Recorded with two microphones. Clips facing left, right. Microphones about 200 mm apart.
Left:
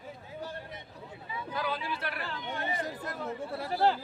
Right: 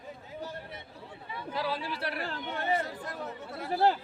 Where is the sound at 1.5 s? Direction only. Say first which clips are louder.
Right 1 dB; 30° right (ahead or behind).